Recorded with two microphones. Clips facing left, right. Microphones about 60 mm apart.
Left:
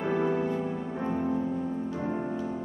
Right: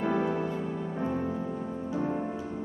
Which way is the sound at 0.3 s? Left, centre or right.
Centre.